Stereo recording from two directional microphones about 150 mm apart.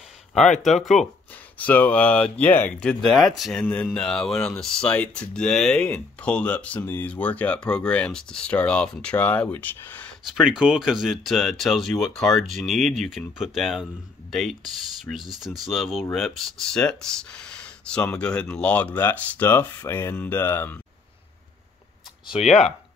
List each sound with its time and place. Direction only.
1.0 s speech: 55° left (ahead or behind)
1.6 s speech: 10° left (ahead or behind)
10.3 s speech: 5° right (ahead or behind); by 20.7 s 15° left (ahead or behind)